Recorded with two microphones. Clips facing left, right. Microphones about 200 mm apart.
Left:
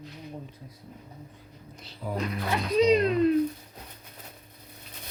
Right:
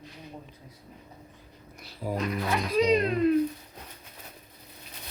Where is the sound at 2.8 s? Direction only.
35° left (ahead or behind).